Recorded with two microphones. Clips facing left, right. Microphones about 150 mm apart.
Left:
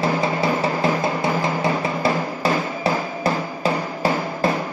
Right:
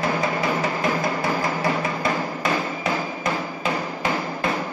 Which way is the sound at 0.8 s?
25° left (ahead or behind).